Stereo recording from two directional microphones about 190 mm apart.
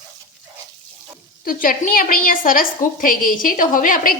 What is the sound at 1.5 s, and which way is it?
A woman's voice, 45° left (ahead or behind).